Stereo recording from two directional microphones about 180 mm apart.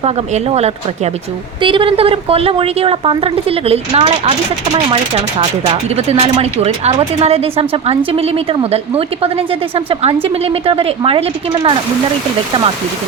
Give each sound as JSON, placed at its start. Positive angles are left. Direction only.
{"t": 0.0, "sound": "speech", "side_deg": -35}